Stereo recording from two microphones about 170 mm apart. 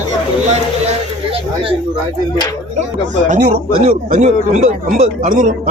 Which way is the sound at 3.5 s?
40° right (ahead or behind).